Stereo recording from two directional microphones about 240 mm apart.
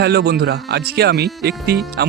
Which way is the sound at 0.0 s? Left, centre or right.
Right.